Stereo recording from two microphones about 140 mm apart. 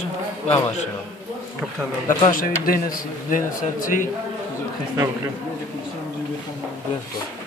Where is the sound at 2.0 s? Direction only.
75° left (ahead or behind).